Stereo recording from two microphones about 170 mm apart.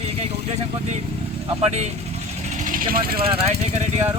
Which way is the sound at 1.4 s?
35° right (ahead or behind).